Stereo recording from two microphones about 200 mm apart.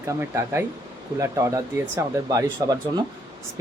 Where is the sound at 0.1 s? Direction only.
15° right (ahead or behind).